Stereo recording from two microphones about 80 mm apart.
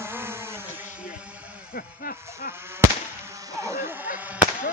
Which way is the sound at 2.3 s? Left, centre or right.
Right.